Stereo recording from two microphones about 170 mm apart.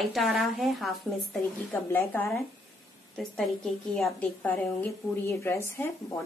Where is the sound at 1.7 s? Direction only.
10° left (ahead or behind).